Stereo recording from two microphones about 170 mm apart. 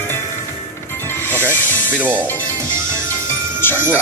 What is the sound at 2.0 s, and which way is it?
Speech, 10° right (ahead or behind).